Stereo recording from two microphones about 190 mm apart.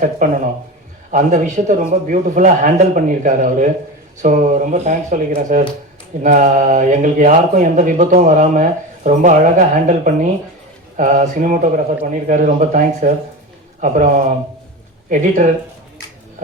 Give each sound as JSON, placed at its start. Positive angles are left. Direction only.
{"t": 0.2, "sound": "speech", "side_deg": -40}